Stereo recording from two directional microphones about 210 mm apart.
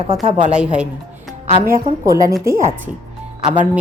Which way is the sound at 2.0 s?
15° right (ahead or behind).